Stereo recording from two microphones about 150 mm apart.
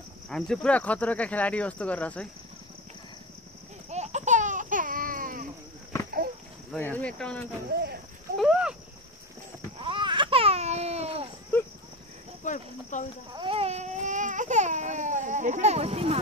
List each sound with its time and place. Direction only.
0.3 s speech: 5° left (ahead or behind)
3.9 s a sound: 50° right (ahead or behind); by 5.5 s 65° right (ahead or behind)
6.8 s speech: 10° left (ahead or behind)
8.4 s a sound: 5° right (ahead or behind)
9.8 s babbling: 35° right (ahead or behind)
12.4 s speech: 55° left (ahead or behind)
13.3 s baby cry: 35° right (ahead or behind)